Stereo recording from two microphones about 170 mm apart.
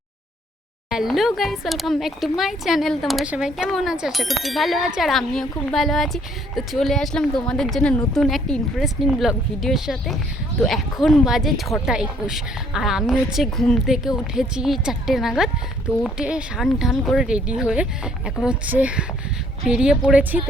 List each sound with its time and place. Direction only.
0.9 s speech: centre (ahead or behind)